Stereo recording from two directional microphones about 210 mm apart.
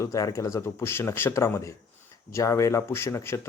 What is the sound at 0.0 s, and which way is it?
Speech, 15° left (ahead or behind).